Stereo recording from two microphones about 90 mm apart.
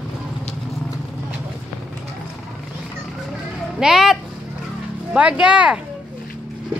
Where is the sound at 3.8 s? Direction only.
5° right (ahead or behind).